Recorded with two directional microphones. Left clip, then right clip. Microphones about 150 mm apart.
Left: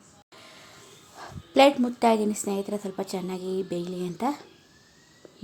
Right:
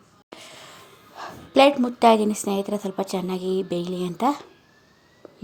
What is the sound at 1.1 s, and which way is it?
A woman's voice, 10° right (ahead or behind).